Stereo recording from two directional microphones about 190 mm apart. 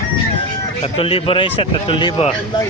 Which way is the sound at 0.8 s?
30° left (ahead or behind).